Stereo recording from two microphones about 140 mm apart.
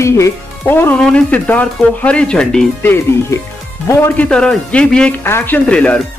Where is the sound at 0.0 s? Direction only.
20° left (ahead or behind).